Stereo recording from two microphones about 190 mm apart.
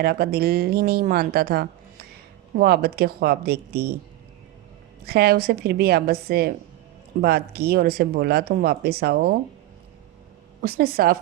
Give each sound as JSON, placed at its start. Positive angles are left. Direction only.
{"t": 0.0, "sound": "speech", "side_deg": -55}
{"t": 5.0, "sound": "speech", "side_deg": -55}
{"t": 10.6, "sound": "speech", "side_deg": -55}